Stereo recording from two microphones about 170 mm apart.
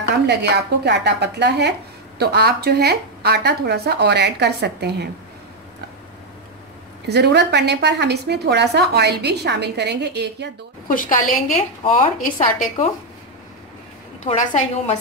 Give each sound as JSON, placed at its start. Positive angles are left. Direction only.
{"t": 0.3, "sound": "a woman's voice", "side_deg": -80}
{"t": 2.1, "sound": "a woman's voice", "side_deg": -70}
{"t": 7.1, "sound": "a woman's voice", "side_deg": -75}
{"t": 10.9, "sound": "a woman's voice", "side_deg": 55}
{"t": 11.8, "sound": "a woman's voice", "side_deg": 30}
{"t": 12.2, "sound": "a woman's voice", "side_deg": 50}
{"t": 14.2, "sound": "a woman's voice", "side_deg": 40}